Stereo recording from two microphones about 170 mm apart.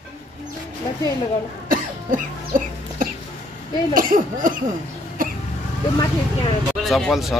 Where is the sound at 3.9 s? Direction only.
55° right (ahead or behind).